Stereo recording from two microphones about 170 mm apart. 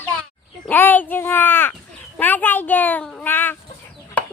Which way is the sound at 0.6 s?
10° left (ahead or behind).